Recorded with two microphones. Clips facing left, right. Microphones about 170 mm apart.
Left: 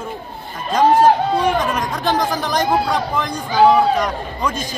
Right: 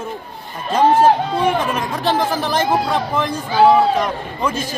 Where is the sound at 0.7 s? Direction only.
5° right (ahead or behind).